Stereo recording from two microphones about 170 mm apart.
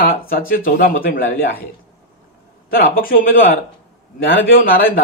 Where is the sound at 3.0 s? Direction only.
55° left (ahead or behind).